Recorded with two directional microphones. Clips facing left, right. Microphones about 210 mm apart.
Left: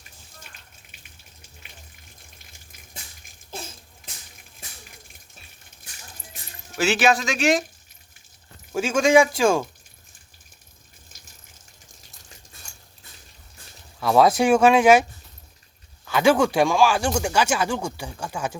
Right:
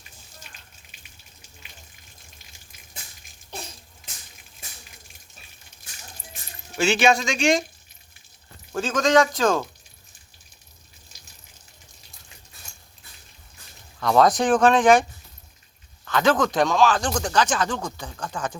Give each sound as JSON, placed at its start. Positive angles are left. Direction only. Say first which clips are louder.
{"t": 3.5, "sound": "bathtub", "louder": "left 1 dB", "side_deg": 0}
{"t": 6.7, "sound": "speech", "louder": "right 1 dB", "side_deg": 5}
{"t": 8.7, "sound": "speech", "louder": "left 2 dB", "side_deg": 10}
{"t": 11.1, "sound": "water", "louder": "left 1 dB", "side_deg": 50}
{"t": 14.0, "sound": "speech", "louder": "left 1 dB", "side_deg": 5}
{"t": 16.0, "sound": "speech", "louder": "left 2 dB", "side_deg": 10}